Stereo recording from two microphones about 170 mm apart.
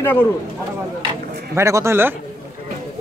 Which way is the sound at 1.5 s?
15° right (ahead or behind).